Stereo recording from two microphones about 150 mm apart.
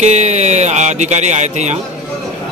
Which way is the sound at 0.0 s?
50° right (ahead or behind).